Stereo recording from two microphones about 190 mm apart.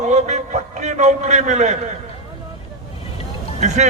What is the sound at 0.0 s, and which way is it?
A man's voice, 35° right (ahead or behind).